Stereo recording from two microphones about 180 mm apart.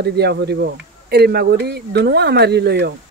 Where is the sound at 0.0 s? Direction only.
65° right (ahead or behind).